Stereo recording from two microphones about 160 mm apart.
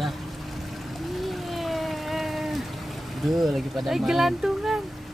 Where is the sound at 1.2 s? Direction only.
Centre (ahead or behind).